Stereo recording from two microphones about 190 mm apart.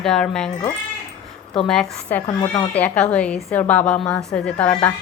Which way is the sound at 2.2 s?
25° left (ahead or behind).